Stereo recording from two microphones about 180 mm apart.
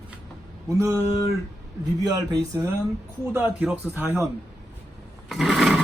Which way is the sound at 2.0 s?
20° right (ahead or behind).